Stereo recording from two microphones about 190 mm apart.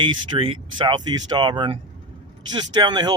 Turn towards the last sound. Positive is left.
turn(degrees=-20)  # may be behind; listen again after turning